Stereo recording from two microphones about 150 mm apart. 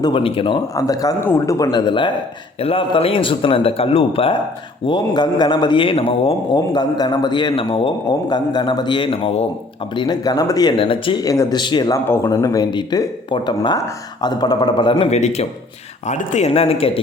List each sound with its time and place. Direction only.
0.0 s a man's voice: 35° left (ahead or behind)
0.8 s a man's voice: 20° left (ahead or behind); by 9.5 s 40° left (ahead or behind)
9.9 s speech: 30° left (ahead or behind)
12.0 s speech: 15° left (ahead or behind); by 17.0 s 40° left (ahead or behind)